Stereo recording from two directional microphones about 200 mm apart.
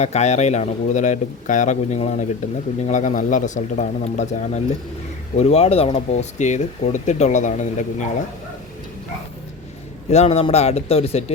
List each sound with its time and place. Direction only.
0.0 s speech: 35° left (ahead or behind)
10.1 s speech: 30° left (ahead or behind)